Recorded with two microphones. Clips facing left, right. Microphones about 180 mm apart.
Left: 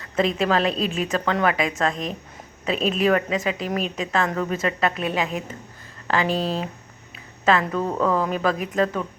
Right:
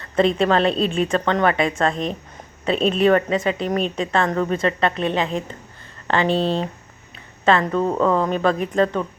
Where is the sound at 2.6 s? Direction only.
Centre (ahead or behind).